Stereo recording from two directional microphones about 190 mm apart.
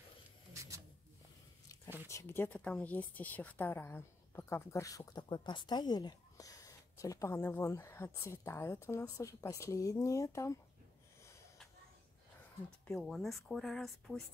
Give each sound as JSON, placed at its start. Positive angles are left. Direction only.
{"t": 0.5, "sound": "a sound", "side_deg": -15}
{"t": 2.0, "sound": "a woman's voice", "side_deg": 15}
{"t": 12.8, "sound": "speech", "side_deg": 5}